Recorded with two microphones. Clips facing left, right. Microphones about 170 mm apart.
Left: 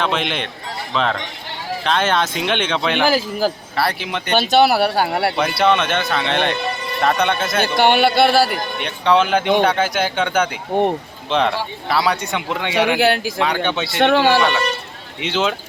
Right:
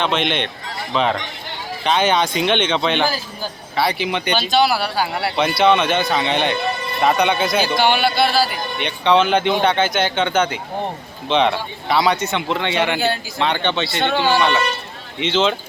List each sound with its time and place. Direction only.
0.0 s speech: centre (ahead or behind)
3.0 s a man's voice: 90° left
3.8 s speech: centre (ahead or behind)
4.4 s speech: 60° left (ahead or behind)
5.4 s speech: 5° left (ahead or behind)
7.6 s speech: 55° left (ahead or behind)
8.8 s speech: 5° left (ahead or behind)
13.0 s a man's voice: 90° left
13.4 s speech: 5° left (ahead or behind)
14.0 s speech: 75° left (ahead or behind)
15.2 s speech: 5° left (ahead or behind)